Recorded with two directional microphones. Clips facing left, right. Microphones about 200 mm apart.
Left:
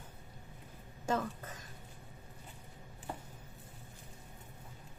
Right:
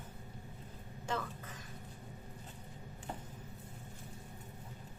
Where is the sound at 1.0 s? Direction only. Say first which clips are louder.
Left 5 dB; 40° left (ahead or behind).